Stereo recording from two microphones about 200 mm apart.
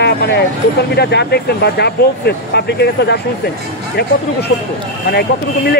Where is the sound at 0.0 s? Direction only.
55° left (ahead or behind).